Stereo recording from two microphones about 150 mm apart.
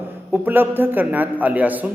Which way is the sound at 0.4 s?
15° right (ahead or behind).